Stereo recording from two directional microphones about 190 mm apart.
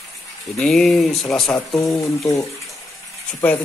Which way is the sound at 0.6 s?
5° left (ahead or behind).